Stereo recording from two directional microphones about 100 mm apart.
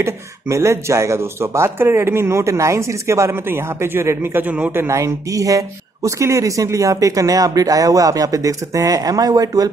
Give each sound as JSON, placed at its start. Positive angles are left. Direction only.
{"t": 0.0, "sound": "speech", "side_deg": -30}
{"t": 4.8, "sound": "speech", "side_deg": -30}